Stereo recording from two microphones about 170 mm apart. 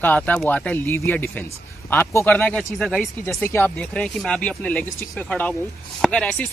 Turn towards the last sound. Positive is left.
turn(degrees=5)  # may be behind; listen again after turning